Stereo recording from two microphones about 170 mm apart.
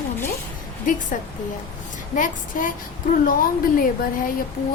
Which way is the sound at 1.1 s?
50° left (ahead or behind).